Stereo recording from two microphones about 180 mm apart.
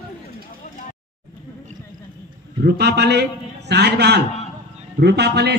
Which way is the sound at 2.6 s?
70° right (ahead or behind).